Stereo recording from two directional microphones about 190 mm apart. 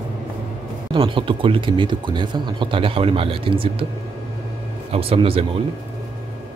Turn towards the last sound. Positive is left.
turn(degrees=-30)  # may be behind; listen again after turning